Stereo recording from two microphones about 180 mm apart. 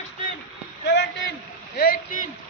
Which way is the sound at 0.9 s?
75° left (ahead or behind).